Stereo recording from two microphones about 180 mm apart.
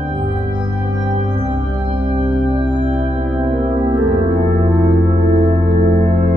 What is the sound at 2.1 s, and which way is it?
Music, 30° right (ahead or behind).